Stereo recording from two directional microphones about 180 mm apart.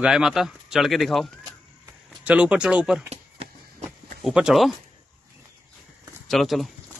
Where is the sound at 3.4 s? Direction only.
35° right (ahead or behind).